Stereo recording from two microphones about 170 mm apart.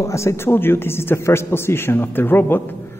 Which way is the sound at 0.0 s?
15° left (ahead or behind).